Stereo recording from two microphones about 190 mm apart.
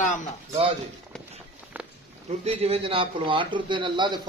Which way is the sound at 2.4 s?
30° right (ahead or behind).